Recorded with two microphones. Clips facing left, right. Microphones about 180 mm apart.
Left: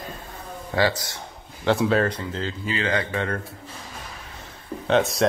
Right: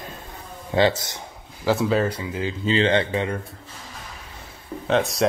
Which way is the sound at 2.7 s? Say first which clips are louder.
Right 6 dB; 25° right (ahead or behind).